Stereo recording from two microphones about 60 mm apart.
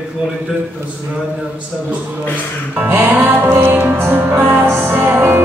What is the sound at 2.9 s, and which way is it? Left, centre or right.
Music, right.